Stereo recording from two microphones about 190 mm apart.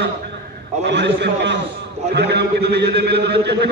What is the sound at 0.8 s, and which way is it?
A man's voice, 65° right (ahead or behind).